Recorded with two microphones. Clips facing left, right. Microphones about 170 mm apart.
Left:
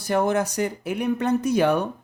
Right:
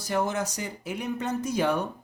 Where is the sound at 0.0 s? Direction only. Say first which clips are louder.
Left 6 dB; 60° left (ahead or behind).